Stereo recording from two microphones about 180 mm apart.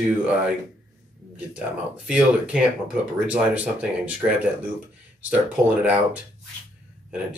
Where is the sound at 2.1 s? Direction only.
5° right (ahead or behind).